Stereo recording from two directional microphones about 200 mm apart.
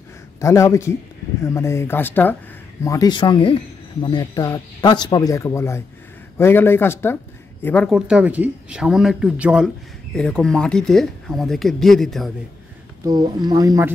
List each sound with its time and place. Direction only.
0.4 s speech: 15° left (ahead or behind)
13.0 s speech: 20° right (ahead or behind)